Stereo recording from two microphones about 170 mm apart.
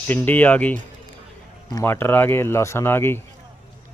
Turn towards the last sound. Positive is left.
turn(degrees=15)  # may be behind; listen again after turning